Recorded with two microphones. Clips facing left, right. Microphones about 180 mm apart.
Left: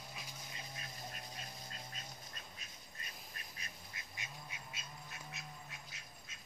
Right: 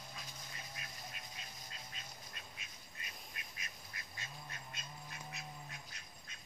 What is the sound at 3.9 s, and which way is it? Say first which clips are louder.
Duck: right 1 dB; 15° left (ahead or behind).